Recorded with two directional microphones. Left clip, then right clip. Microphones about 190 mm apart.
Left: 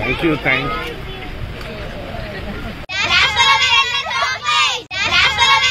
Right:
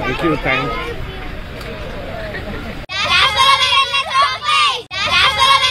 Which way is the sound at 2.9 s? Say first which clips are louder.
Right 1 dB; 15° right (ahead or behind).